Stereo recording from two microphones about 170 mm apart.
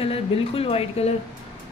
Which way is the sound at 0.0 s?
35° left (ahead or behind).